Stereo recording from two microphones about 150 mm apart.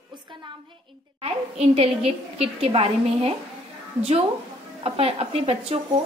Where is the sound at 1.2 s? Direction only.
40° right (ahead or behind).